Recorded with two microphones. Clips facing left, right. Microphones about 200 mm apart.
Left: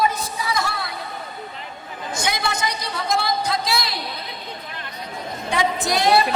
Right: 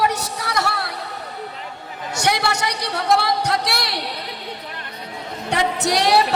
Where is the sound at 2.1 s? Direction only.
70° right (ahead or behind).